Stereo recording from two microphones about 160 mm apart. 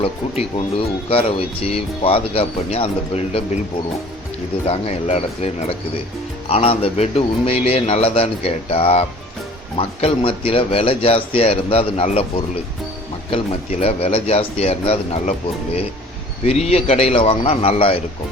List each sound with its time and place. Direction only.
0.0 s a man's voice: 35° left (ahead or behind)
4.6 s a man's voice: 40° left (ahead or behind)
6.5 s a man's voice: 35° left (ahead or behind)
13.3 s a man's voice: 40° left (ahead or behind)
16.5 s a man's voice: 40° left (ahead or behind)